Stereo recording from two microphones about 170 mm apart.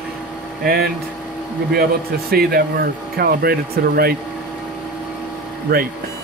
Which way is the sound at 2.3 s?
65° right (ahead or behind).